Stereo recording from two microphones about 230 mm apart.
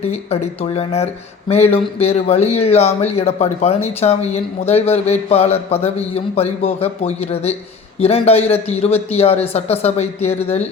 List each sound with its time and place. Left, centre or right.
0.1 s speech: left